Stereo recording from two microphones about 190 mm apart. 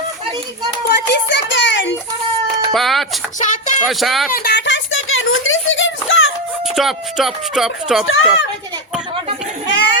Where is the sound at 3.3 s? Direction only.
40° left (ahead or behind).